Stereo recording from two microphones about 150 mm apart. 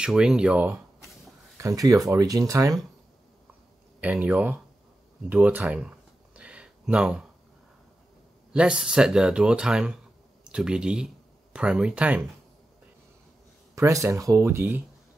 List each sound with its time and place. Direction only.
0.0 s speech: 5° right (ahead or behind)
1.6 s speech: 20° right (ahead or behind)
4.0 s speech: 10° right (ahead or behind)
5.3 s a sound: 10° right (ahead or behind)
8.5 s speech: 5° right (ahead or behind)
13.7 s speech: 20° right (ahead or behind)